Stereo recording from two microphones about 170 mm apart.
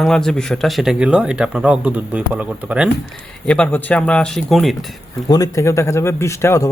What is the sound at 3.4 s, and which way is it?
Speech, 5° left (ahead or behind).